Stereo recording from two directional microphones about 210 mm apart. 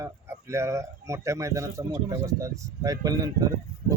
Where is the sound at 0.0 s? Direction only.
15° right (ahead or behind).